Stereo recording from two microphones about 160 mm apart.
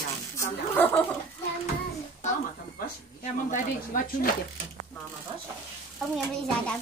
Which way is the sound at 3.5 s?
60° left (ahead or behind).